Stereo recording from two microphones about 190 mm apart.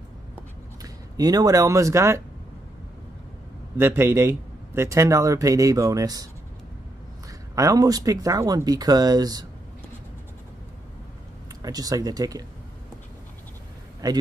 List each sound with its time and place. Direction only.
0.8 s speech: 20° right (ahead or behind)
3.7 s a man's voice: 10° right (ahead or behind)
7.5 s speech: 20° right (ahead or behind)
11.6 s speech: 20° right (ahead or behind)
14.0 s a man's voice: 20° right (ahead or behind)